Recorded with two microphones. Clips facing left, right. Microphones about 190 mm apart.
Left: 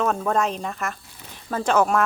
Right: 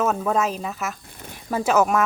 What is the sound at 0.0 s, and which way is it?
Speech, 5° right (ahead or behind).